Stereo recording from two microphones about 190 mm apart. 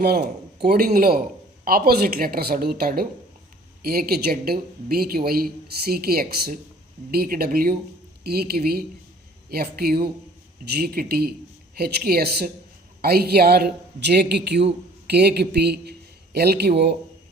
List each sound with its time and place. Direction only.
0.6 s a woman's voice: 50° right (ahead or behind)